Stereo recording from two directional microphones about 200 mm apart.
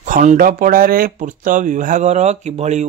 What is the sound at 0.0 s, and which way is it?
Speech, 40° right (ahead or behind).